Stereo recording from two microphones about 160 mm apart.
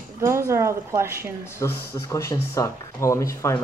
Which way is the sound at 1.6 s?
20° left (ahead or behind).